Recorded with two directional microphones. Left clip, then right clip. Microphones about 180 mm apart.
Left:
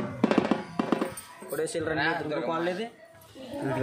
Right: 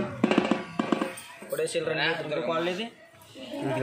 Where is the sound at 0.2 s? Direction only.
5° left (ahead or behind).